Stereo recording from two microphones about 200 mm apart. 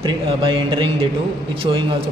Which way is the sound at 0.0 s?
25° right (ahead or behind).